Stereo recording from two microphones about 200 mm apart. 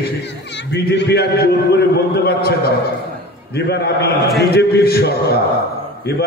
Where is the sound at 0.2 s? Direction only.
60° left (ahead or behind).